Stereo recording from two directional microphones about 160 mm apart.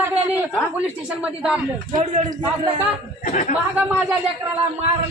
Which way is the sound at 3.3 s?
55° left (ahead or behind).